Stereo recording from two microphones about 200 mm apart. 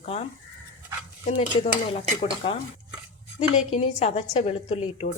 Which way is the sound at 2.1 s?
25° left (ahead or behind).